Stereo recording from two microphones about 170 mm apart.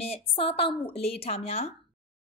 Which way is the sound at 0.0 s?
35° left (ahead or behind).